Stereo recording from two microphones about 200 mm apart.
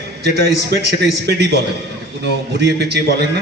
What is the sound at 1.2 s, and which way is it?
Speech, 55° right (ahead or behind).